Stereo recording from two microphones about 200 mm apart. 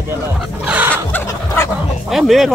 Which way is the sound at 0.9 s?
10° left (ahead or behind).